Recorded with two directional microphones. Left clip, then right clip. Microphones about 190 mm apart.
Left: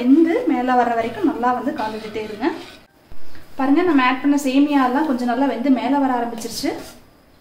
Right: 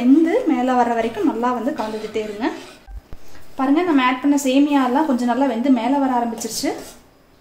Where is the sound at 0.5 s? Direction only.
35° right (ahead or behind).